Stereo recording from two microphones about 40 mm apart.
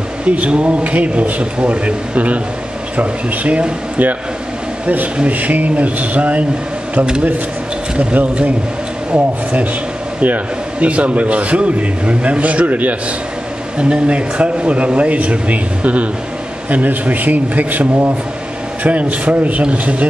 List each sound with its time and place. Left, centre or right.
0.2 s a man's voice: right
5.3 s a man's voice: right
8.0 s a man's voice: right
13.7 s a man's voice: right